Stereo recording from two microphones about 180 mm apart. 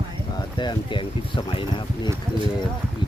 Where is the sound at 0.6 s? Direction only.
25° left (ahead or behind).